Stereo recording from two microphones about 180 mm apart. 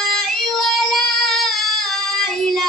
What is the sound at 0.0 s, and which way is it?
Child singing, centre (ahead or behind).